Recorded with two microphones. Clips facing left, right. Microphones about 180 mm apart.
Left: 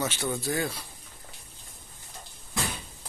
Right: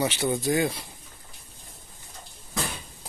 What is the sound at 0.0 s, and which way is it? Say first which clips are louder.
Speech: right 5 dB; 15° right (ahead or behind).